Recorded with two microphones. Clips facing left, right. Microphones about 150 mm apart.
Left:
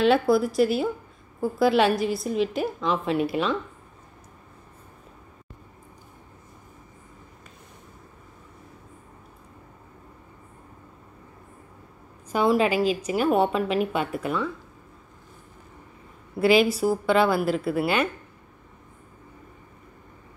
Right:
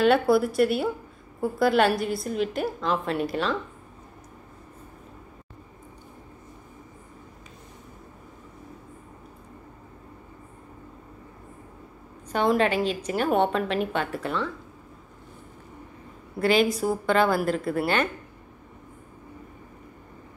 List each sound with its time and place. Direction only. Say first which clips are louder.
0.0 s a woman's voice: even; centre (ahead or behind)
12.3 s a woman's voice: left 1 dB; 5° left (ahead or behind)
16.3 s a woman's voice: left 2 dB; 5° left (ahead or behind)